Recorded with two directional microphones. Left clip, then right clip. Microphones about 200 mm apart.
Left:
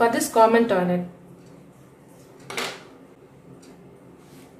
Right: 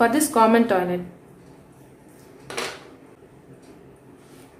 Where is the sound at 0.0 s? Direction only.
20° right (ahead or behind).